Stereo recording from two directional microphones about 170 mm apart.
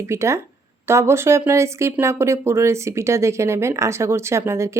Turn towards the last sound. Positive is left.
turn(degrees=-15)  # may be behind; listen again after turning